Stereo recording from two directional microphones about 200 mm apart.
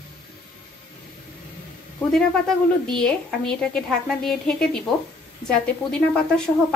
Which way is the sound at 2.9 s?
5° left (ahead or behind).